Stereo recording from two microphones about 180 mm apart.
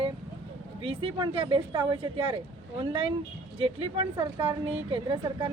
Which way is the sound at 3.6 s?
30° right (ahead or behind).